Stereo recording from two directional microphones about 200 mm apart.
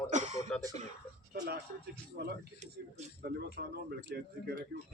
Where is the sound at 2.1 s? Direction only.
55° right (ahead or behind).